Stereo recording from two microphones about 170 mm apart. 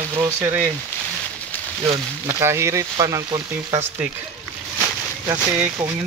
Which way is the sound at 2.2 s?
15° right (ahead or behind).